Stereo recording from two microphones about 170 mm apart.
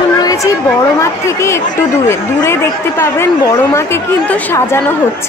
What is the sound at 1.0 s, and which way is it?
Speech, 15° left (ahead or behind).